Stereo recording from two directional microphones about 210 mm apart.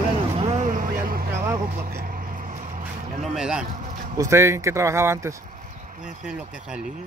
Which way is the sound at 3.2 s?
Centre (ahead or behind).